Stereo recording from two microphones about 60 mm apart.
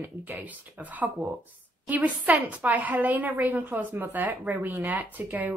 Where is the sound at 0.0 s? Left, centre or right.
Right.